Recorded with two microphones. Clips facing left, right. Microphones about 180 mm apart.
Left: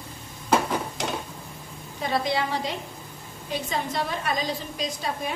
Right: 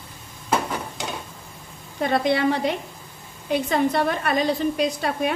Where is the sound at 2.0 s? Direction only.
60° right (ahead or behind).